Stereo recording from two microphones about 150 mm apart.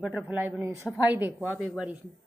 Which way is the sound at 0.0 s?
10° right (ahead or behind).